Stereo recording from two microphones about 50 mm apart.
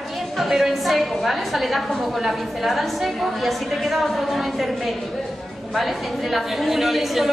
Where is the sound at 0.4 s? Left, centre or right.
Centre.